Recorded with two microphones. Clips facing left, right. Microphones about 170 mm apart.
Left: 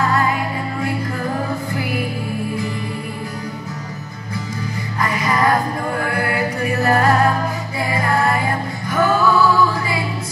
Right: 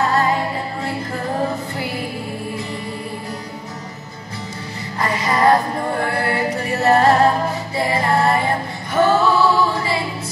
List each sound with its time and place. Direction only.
0.0 s music: 30° right (ahead or behind)
5.0 s music: 30° right (ahead or behind)